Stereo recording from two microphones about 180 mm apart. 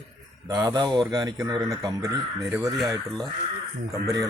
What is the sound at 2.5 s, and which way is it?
Speech, centre (ahead or behind).